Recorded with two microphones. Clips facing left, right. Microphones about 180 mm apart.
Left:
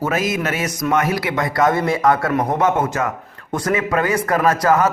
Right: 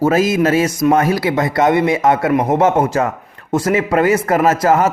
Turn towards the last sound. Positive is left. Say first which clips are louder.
# right 3 dB
turn(degrees=-25)  # may be behind; listen again after turning